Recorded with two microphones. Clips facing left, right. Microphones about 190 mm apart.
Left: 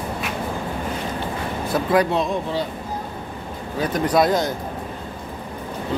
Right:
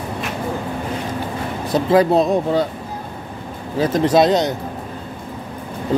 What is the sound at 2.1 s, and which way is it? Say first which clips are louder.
Speech: right 7 dB; 40° right (ahead or behind).